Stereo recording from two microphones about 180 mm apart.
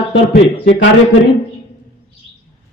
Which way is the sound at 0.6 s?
90° left.